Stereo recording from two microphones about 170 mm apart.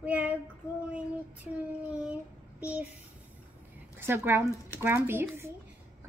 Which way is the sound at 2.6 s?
10° right (ahead or behind).